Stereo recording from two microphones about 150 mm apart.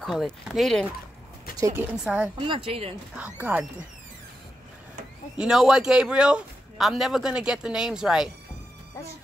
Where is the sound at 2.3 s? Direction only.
35° right (ahead or behind).